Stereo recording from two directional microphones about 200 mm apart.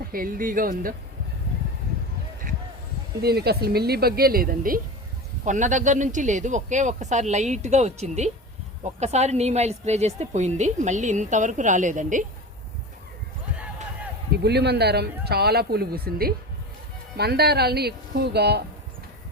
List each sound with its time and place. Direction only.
0.1 s speech: 45° right (ahead or behind)
3.2 s speech: 55° right (ahead or behind)
14.4 s speech: 55° right (ahead or behind)